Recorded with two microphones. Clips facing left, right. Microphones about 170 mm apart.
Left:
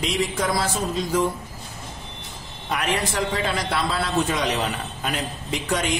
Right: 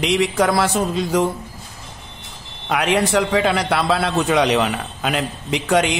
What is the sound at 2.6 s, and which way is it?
A man's voice, 70° right (ahead or behind).